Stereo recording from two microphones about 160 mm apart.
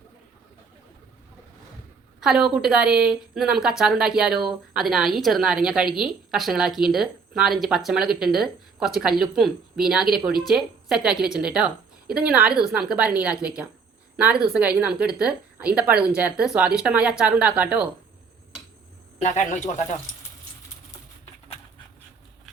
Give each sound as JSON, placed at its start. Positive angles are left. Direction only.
{"t": 2.2, "sound": "a woman's voice", "side_deg": -5}
{"t": 19.2, "sound": "speech", "side_deg": 50}